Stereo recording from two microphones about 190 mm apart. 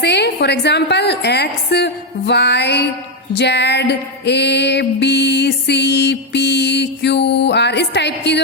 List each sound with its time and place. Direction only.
0.0 s music: 65° left (ahead or behind)